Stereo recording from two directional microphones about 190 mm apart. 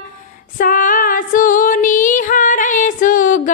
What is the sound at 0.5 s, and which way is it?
Female singing, 45° left (ahead or behind).